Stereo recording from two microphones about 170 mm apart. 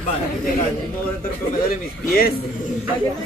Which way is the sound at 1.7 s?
60° left (ahead or behind).